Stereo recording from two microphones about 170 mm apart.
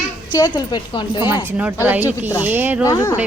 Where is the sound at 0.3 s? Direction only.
25° left (ahead or behind).